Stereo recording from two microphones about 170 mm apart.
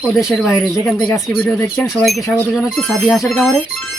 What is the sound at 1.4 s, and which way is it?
Speech, 10° left (ahead or behind).